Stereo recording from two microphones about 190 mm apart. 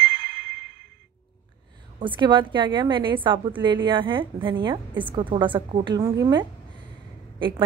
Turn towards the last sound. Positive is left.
turn(degrees=-25)  # may be behind; listen again after turning